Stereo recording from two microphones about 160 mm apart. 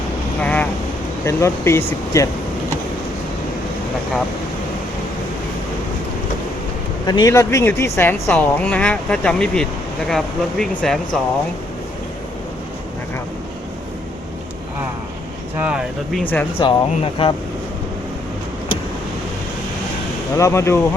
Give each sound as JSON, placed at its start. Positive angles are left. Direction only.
{"t": 0.4, "sound": "speech", "side_deg": 10}
{"t": 7.1, "sound": "speech", "side_deg": 20}
{"t": 15.6, "sound": "speech", "side_deg": -5}
{"t": 16.2, "sound": "speech", "side_deg": 10}
{"t": 16.6, "sound": "speech", "side_deg": 35}
{"t": 20.3, "sound": "speech", "side_deg": 20}